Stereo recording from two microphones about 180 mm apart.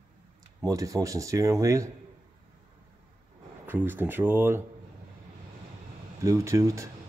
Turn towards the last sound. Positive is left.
turn(degrees=-15)  # may be behind; listen again after turning